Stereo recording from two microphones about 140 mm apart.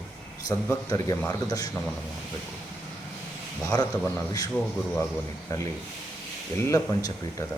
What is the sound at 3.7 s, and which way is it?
Speech, 25° left (ahead or behind).